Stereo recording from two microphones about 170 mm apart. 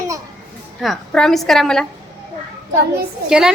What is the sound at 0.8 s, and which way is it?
A woman's voice, centre (ahead or behind).